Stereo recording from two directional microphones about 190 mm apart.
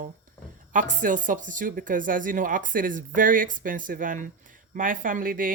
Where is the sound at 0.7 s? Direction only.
40° right (ahead or behind).